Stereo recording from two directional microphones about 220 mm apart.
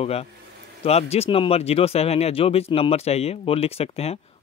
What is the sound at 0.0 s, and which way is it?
Speech, 25° left (ahead or behind).